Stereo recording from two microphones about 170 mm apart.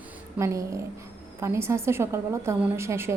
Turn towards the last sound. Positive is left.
turn(degrees=-15)  # may be behind; listen again after turning